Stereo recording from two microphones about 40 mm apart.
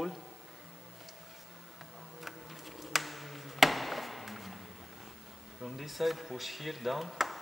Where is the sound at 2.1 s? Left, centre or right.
Centre.